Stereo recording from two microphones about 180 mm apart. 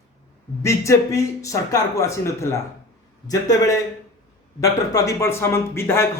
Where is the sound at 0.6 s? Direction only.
15° left (ahead or behind).